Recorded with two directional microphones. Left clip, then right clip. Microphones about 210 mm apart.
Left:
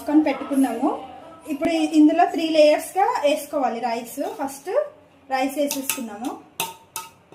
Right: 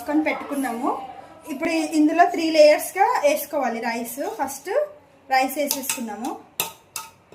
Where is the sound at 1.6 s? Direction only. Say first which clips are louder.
Left 3 dB; 5° right (ahead or behind).